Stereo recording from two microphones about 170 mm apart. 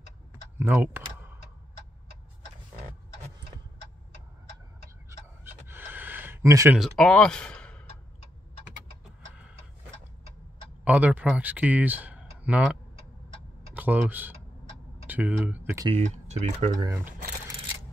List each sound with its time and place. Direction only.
0.6 s computer keyboard: 10° right (ahead or behind)
5.4 s a sound: 15° right (ahead or behind)
6.8 s speech: centre (ahead or behind)
10.8 s speech: 10° right (ahead or behind)
13.7 s speech: 10° right (ahead or behind)
16.0 s speech: 40° right (ahead or behind)
16.7 s speech: 20° right (ahead or behind)